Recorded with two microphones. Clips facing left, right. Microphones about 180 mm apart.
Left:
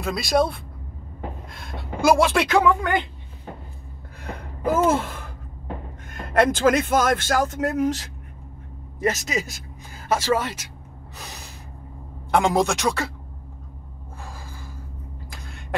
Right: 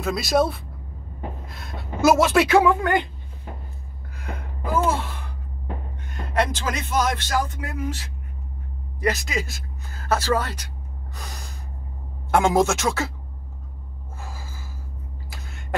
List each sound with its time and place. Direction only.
0.0 s a woman's voice: centre (ahead or behind)
4.2 s a sound: 35° left (ahead or behind)
6.0 s speech: 50° left (ahead or behind)
9.0 s speech: 20° left (ahead or behind)
11.1 s snort: 5° left (ahead or behind)
12.3 s speech: centre (ahead or behind)
14.2 s gasp: 5° right (ahead or behind)
15.2 s a sound: 5° right (ahead or behind)